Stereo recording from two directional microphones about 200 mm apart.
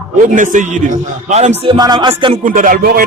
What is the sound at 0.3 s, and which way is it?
A man's voice, 40° right (ahead or behind).